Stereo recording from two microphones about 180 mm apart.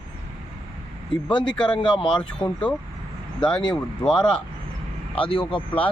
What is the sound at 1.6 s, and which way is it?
Speech, 25° left (ahead or behind).